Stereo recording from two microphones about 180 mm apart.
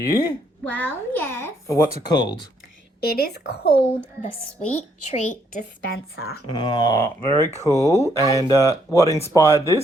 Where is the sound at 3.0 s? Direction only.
60° left (ahead or behind).